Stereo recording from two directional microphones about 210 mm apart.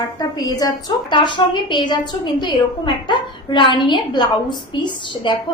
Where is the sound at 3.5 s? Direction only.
20° left (ahead or behind).